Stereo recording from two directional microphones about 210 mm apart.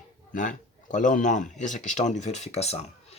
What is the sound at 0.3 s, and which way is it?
Speech, 40° left (ahead or behind).